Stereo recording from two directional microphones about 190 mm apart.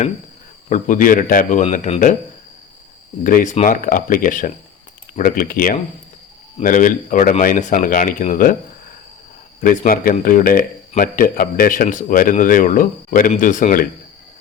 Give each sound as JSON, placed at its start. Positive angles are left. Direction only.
{"t": 0.7, "sound": "speech", "side_deg": 45}
{"t": 3.2, "sound": "speech", "side_deg": 45}
{"t": 9.6, "sound": "speech", "side_deg": 45}